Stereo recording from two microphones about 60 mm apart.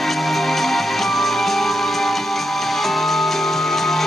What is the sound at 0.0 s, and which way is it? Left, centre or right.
Music, centre.